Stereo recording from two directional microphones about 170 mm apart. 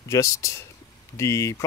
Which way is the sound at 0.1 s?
20° left (ahead or behind).